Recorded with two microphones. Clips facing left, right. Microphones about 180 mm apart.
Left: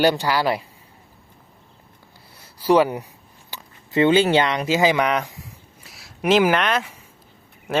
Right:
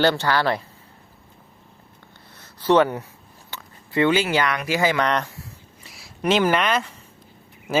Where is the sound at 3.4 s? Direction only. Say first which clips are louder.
Right 1 dB; 20° left (ahead or behind).